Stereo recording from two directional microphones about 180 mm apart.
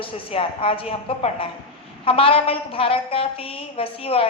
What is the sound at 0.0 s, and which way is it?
A woman's voice, 30° left (ahead or behind).